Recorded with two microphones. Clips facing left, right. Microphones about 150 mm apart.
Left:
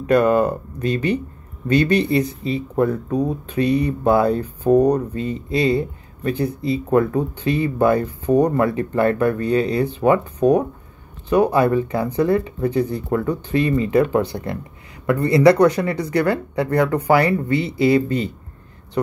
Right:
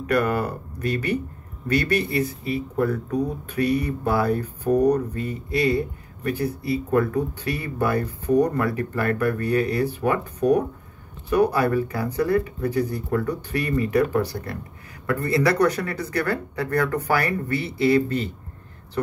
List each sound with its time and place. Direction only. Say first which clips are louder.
0.0 s speech: left 7 dB; 30° left (ahead or behind)
17.1 s speech: left 7 dB; 25° left (ahead or behind)